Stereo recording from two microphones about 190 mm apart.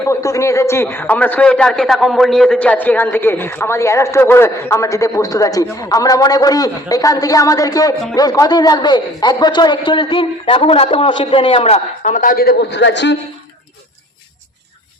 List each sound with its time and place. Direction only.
0.1 s a man's voice: 15° left (ahead or behind); by 13.1 s 65° left (ahead or behind)